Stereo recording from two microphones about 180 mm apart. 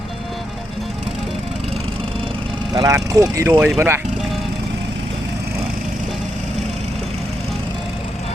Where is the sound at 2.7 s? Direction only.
20° right (ahead or behind).